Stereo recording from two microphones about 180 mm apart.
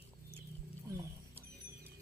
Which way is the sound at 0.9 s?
15° right (ahead or behind).